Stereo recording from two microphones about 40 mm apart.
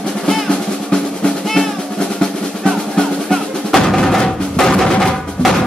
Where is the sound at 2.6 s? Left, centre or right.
Centre.